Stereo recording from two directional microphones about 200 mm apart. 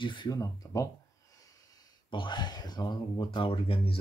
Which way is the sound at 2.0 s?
25° left (ahead or behind).